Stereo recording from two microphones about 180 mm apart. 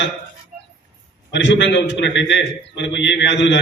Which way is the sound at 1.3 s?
80° left.